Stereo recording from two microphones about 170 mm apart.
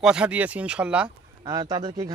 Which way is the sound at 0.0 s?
5° right (ahead or behind).